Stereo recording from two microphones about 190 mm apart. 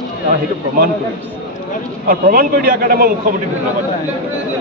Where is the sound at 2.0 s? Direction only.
50° right (ahead or behind).